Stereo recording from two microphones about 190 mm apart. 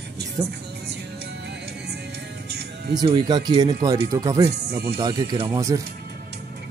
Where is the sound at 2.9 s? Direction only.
20° right (ahead or behind).